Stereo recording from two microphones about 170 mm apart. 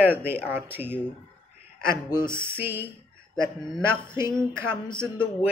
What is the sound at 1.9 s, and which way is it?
Speech, 25° left (ahead or behind).